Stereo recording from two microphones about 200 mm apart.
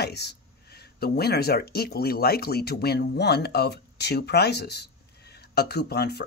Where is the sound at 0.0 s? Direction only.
55° left (ahead or behind).